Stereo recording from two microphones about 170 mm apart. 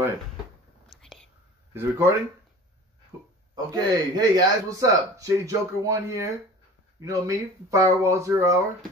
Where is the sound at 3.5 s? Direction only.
25° right (ahead or behind).